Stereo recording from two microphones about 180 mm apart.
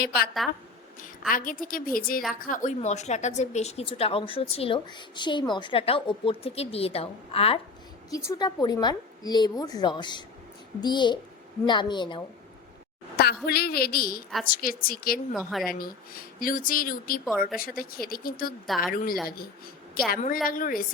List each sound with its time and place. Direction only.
0.4 s speech: centre (ahead or behind)
1.3 s a woman's voice: 50° left (ahead or behind); by 7.6 s 30° left (ahead or behind)
8.1 s a woman's voice: 15° left (ahead or behind)
13.1 s a woman's voice: 60° left (ahead or behind)
15.3 s speech: centre (ahead or behind)
15.8 s speech: 55° left (ahead or behind)
18.6 s speech: centre (ahead or behind)
20.1 s speech: 50° left (ahead or behind)